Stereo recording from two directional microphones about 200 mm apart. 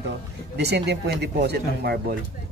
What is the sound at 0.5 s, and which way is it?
Speech, 55° right (ahead or behind).